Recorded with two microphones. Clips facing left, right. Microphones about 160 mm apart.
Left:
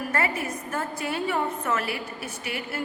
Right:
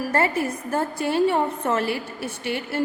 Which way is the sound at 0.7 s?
30° right (ahead or behind).